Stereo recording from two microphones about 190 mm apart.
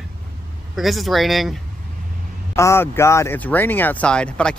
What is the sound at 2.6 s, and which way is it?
Speech, 15° left (ahead or behind).